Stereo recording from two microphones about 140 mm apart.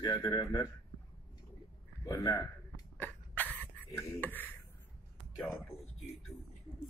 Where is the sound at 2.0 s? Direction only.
25° left (ahead or behind).